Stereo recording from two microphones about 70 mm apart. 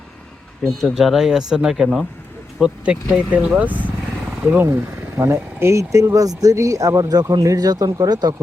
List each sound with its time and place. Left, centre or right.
0.6 s speech: centre; by 7.1 s right
7.1 s speech: right